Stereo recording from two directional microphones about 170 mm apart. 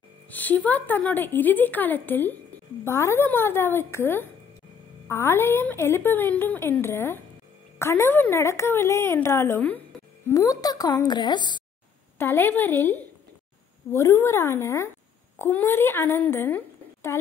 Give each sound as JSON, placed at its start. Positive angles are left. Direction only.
{"t": 0.3, "sound": "a woman's voice", "side_deg": 10}
{"t": 12.2, "sound": "a woman's voice", "side_deg": 15}